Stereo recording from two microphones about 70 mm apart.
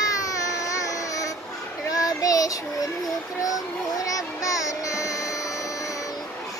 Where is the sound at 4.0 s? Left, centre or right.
Left.